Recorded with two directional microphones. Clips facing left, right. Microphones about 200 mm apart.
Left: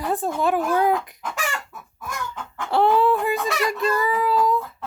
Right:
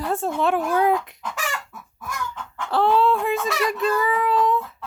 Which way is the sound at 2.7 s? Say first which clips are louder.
Left 1 dB; 15° left (ahead or behind).